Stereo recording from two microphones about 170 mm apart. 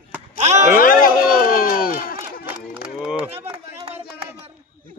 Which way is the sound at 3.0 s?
5° right (ahead or behind).